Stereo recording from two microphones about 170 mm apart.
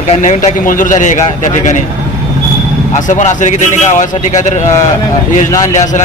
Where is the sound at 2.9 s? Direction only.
45° left (ahead or behind).